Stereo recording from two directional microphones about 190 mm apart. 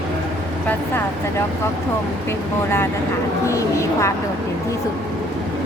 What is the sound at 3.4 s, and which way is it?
Speech, 15° left (ahead or behind).